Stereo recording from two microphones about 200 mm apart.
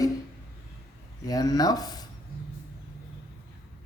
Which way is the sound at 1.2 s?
20° left (ahead or behind).